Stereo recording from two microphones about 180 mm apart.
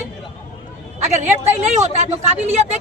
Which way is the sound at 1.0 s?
40° right (ahead or behind).